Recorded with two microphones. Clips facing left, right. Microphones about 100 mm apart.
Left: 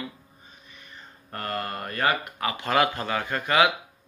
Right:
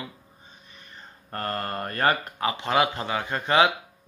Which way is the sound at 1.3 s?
35° right (ahead or behind).